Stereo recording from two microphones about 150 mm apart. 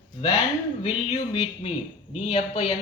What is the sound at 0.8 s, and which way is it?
A man's voice, 40° left (ahead or behind).